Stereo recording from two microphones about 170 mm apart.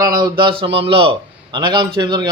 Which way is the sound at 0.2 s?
25° right (ahead or behind).